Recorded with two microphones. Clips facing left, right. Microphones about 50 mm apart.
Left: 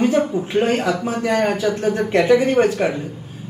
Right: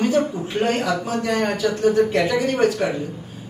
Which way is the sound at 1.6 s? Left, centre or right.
Left.